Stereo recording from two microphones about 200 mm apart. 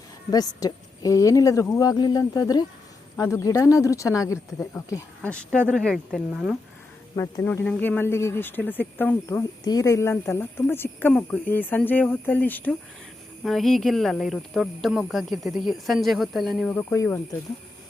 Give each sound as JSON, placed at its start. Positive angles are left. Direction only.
{"t": 0.3, "sound": "speech", "side_deg": 20}
{"t": 7.2, "sound": "speech", "side_deg": 15}